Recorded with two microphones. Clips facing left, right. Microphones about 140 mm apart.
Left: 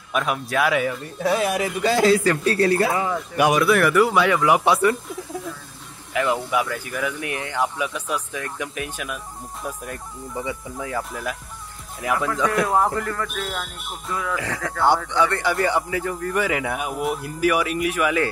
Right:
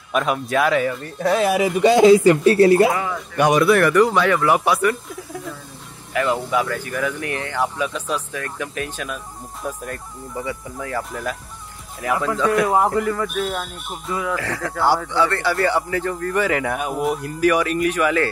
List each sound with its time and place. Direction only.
0.1 s speech: centre (ahead or behind)
1.8 s speech: 20° right (ahead or behind)
2.9 s speech: 30° left (ahead or behind)
3.3 s speech: 5° left (ahead or behind)
6.1 s speech: 15° left (ahead or behind)
12.5 s speech: 5° right (ahead or behind)
14.3 s speech: 15° left (ahead or behind)